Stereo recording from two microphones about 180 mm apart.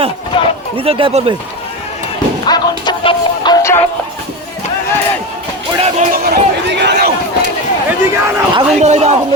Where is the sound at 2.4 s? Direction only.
25° left (ahead or behind).